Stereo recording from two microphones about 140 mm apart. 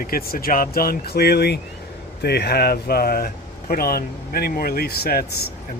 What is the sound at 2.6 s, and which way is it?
Speech, 90° left.